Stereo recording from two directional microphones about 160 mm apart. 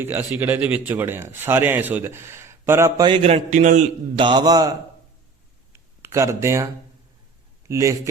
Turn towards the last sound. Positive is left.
turn(degrees=-20)  # may be behind; listen again after turning